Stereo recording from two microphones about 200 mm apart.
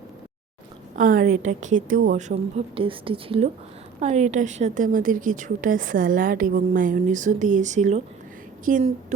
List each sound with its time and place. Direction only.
0.9 s a woman's voice: 45° right (ahead or behind)